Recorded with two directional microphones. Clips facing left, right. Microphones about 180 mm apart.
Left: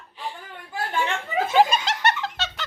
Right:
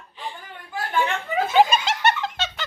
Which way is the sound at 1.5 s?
5° right (ahead or behind).